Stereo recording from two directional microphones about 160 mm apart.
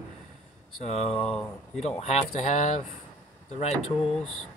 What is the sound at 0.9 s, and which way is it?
Speech, 40° left (ahead or behind).